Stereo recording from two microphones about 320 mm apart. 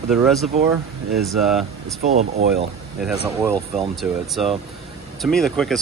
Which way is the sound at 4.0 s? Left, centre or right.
Centre.